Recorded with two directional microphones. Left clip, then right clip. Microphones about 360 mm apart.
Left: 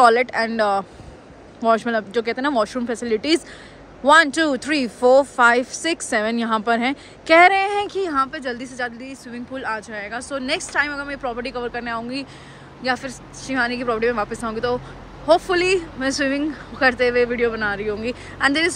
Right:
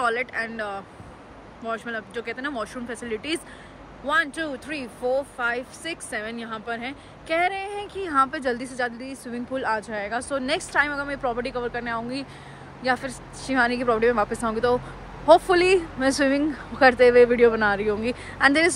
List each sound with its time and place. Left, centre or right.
0.0 s speech: centre
8.1 s speech: centre